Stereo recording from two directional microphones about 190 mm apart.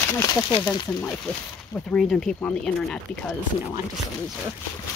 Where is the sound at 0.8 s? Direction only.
5° left (ahead or behind).